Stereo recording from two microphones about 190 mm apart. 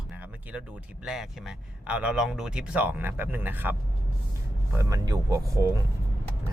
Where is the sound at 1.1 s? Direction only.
5° right (ahead or behind).